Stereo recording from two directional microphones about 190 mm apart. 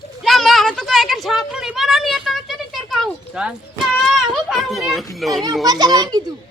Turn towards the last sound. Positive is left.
turn(degrees=-20)  # may be behind; listen again after turning